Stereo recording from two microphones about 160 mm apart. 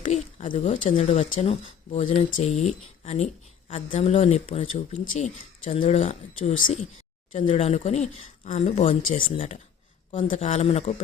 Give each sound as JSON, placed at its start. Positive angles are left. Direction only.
{"t": 0.1, "sound": "speech", "side_deg": 45}
{"t": 9.2, "sound": "speech", "side_deg": 35}
{"t": 10.2, "sound": "speech", "side_deg": 50}